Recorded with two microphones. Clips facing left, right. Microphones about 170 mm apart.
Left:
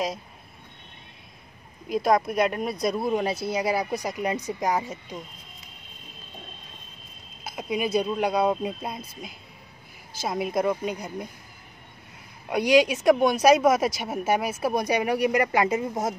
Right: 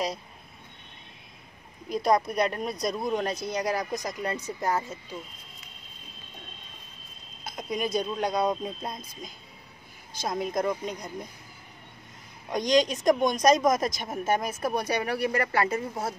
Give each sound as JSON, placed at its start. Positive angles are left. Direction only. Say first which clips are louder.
{"t": 1.9, "sound": "speech", "louder": "left 2 dB", "side_deg": 0}
{"t": 7.4, "sound": "speech", "louder": "left 3 dB", "side_deg": 5}
{"t": 12.4, "sound": "speech", "louder": "left 4 dB", "side_deg": 10}